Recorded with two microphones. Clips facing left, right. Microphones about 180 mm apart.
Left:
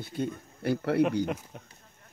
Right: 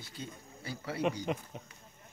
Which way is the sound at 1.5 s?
Centre (ahead or behind).